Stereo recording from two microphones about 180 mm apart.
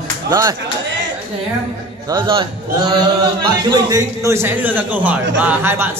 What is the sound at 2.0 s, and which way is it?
Speech, 25° right (ahead or behind).